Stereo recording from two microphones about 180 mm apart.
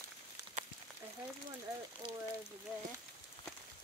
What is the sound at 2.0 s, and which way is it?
Speech, 25° right (ahead or behind).